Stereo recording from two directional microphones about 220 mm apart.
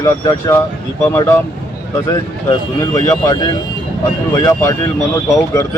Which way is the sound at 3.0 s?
15° left (ahead or behind).